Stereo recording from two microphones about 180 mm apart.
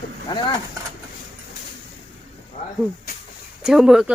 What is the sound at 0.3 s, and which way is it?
Speech, 25° left (ahead or behind).